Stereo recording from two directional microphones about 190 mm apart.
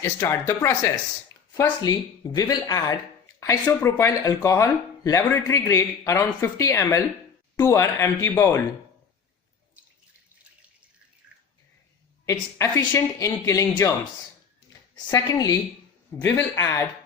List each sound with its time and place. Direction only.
0.0 s speech: 15° left (ahead or behind)
12.2 s speech: 15° left (ahead or behind)
15.1 s speech: 20° left (ahead or behind)